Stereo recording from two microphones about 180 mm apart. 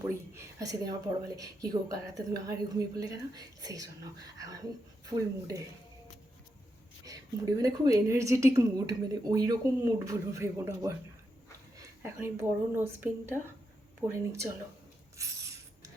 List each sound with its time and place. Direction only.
0.0 s a woman's voice: 15° right (ahead or behind)
7.0 s a woman's voice: 20° right (ahead or behind)
15.2 s a sound: 20° right (ahead or behind)